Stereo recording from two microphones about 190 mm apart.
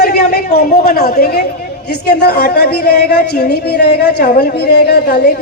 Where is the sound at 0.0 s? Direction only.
55° left (ahead or behind).